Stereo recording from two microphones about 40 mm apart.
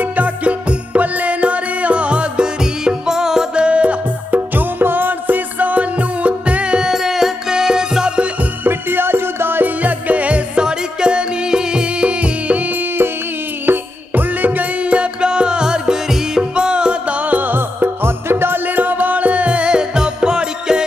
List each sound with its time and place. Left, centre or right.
0.0 s music: right; by 3.6 s centre
3.6 s music: right
4.3 s music: right
6.9 s music: centre
8.6 s music: right
9.8 s music: right
10.6 s music: right
13.7 s music: right
14.8 s music: right
17.2 s music: right
18.8 s music: right